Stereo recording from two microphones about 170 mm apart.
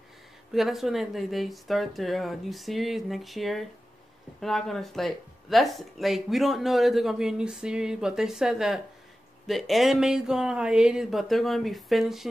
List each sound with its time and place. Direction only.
0.5 s speech: centre (ahead or behind)